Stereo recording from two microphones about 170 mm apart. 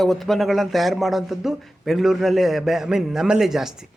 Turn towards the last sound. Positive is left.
turn(degrees=0)  # may be behind; listen again after turning